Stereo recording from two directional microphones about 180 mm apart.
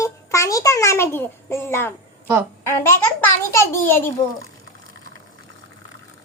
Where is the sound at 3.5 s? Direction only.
15° left (ahead or behind).